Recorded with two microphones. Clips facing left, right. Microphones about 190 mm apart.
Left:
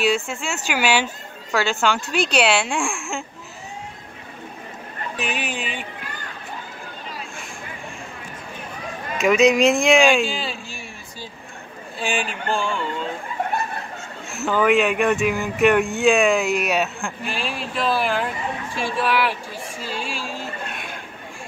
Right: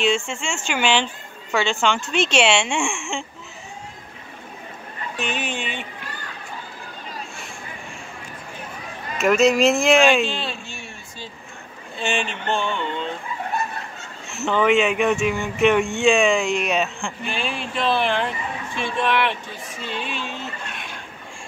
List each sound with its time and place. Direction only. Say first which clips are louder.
0.0 s speech: even; centre (ahead or behind)
5.2 s speech: right 1 dB; 5° left (ahead or behind)
9.2 s speech: left 1 dB; centre (ahead or behind)
14.3 s speech: even; centre (ahead or behind)
20.6 s a sound: left 3 dB; 55° left (ahead or behind)